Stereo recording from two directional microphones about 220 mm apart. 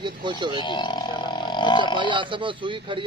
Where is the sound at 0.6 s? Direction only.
20° left (ahead or behind).